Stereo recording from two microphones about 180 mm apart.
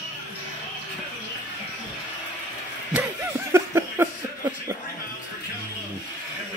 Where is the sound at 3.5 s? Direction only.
15° right (ahead or behind).